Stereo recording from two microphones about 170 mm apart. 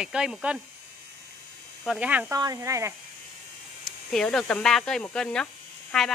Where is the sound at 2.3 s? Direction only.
20° right (ahead or behind).